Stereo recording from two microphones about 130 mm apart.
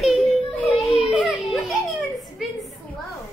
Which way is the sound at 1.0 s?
5° right (ahead or behind).